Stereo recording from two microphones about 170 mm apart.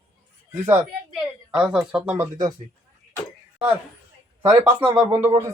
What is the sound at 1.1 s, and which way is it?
Speech, 5° right (ahead or behind).